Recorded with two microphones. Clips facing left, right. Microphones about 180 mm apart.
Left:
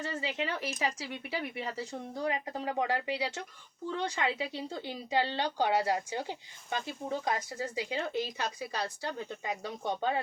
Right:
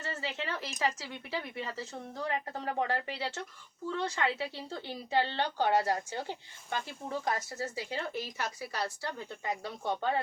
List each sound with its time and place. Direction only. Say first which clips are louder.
0.2 s speech: left 3 dB; 15° left (ahead or behind)